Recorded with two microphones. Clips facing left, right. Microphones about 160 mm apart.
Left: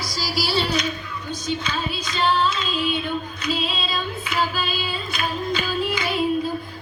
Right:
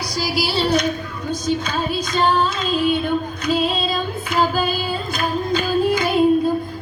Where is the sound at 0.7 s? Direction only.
50° right (ahead or behind).